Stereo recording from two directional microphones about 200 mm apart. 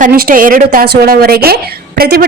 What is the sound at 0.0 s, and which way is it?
A woman's voice, 45° right (ahead or behind).